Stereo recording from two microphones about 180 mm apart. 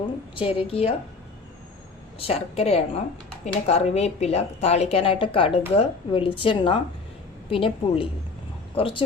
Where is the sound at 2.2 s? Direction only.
35° left (ahead or behind).